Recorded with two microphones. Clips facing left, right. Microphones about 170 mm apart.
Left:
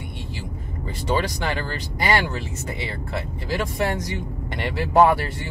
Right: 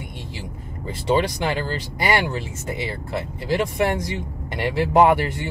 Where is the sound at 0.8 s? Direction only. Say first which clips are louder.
Right 4 dB; 20° right (ahead or behind).